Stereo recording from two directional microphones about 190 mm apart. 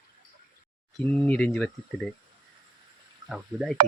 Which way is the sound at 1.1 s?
5° left (ahead or behind).